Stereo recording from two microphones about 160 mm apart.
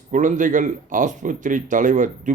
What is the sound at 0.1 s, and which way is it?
A man's voice, 50° right (ahead or behind).